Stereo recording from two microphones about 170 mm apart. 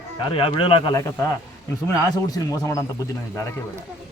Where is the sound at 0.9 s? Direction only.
15° left (ahead or behind).